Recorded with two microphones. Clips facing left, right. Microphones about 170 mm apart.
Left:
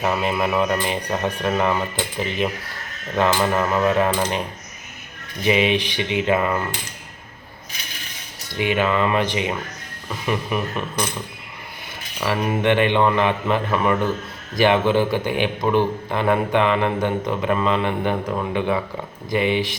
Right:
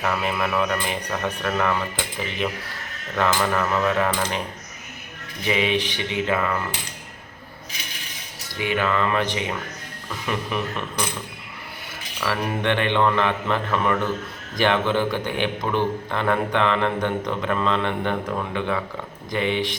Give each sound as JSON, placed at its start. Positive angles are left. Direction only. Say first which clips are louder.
{"t": 0.0, "sound": "speech", "louder": "left 3 dB", "side_deg": 20}
{"t": 3.2, "sound": "speech", "louder": "left 3 dB", "side_deg": 20}
{"t": 5.5, "sound": "a man's voice", "louder": "left 4 dB", "side_deg": 20}
{"t": 8.5, "sound": "a man's voice", "louder": "left 3 dB", "side_deg": 20}
{"t": 12.2, "sound": "a man's voice", "louder": "left 4 dB", "side_deg": 15}